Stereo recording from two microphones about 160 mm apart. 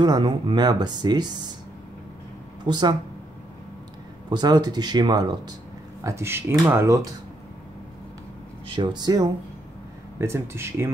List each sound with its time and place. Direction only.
0.0 s speech: 25° right (ahead or behind)
2.6 s speech: 25° right (ahead or behind)
4.3 s speech: 25° right (ahead or behind)
8.6 s speech: 30° right (ahead or behind)